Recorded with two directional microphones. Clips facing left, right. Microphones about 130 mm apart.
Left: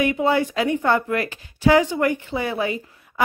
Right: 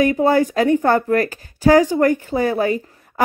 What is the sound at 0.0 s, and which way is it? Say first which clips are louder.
Speech: right 4 dB; 40° right (ahead or behind).